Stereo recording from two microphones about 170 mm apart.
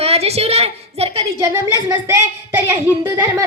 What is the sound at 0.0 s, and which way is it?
A woman's voice, 35° right (ahead or behind).